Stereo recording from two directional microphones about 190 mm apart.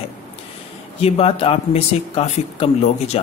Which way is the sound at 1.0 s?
30° left (ahead or behind).